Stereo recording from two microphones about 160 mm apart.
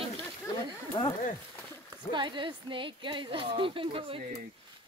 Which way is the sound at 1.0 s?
30° left (ahead or behind).